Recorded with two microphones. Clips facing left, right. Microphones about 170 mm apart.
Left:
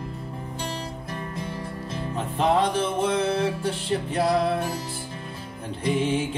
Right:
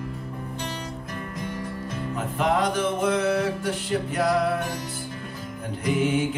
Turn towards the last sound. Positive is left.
turn(degrees=30)  # may be behind; listen again after turning